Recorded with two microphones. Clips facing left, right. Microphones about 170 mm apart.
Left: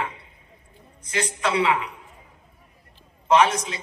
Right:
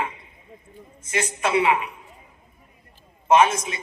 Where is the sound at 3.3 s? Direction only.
25° right (ahead or behind).